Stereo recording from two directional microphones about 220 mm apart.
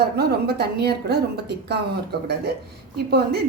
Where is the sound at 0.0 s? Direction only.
45° right (ahead or behind).